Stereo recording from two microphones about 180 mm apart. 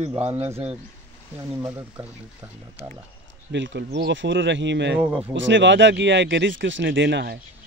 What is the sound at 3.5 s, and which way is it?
Speech, 85° right.